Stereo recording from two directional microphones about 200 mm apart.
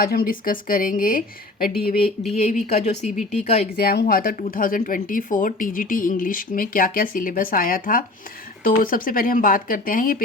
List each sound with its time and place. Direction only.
0.0 s speech: 50° left (ahead or behind)
2.3 s speech: 35° left (ahead or behind)
3.8 s speech: 50° left (ahead or behind)